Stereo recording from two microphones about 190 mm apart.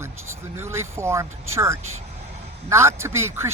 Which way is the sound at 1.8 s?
90° right.